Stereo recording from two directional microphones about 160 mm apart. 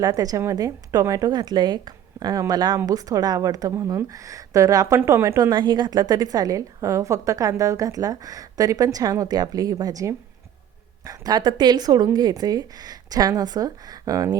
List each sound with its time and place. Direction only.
0.0 s a woman's voice: 20° right (ahead or behind)